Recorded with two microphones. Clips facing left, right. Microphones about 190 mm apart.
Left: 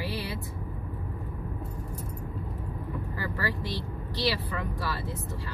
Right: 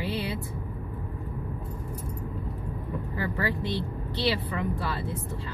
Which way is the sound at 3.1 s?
25° right (ahead or behind).